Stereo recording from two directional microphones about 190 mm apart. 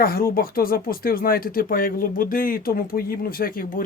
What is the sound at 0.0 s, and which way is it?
Speech, 50° left (ahead or behind).